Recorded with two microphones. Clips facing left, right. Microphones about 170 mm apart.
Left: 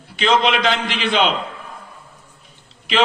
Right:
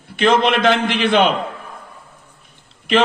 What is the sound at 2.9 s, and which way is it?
Speech, 50° right (ahead or behind).